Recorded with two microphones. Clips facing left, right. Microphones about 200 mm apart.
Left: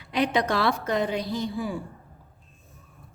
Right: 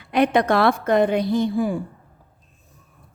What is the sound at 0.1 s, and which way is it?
Speech, 55° right (ahead or behind).